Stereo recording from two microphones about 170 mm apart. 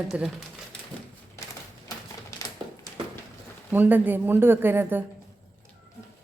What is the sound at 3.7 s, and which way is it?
Speech, 10° right (ahead or behind).